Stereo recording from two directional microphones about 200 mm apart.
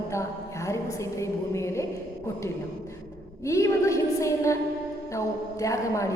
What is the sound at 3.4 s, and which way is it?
A woman's voice, 15° left (ahead or behind).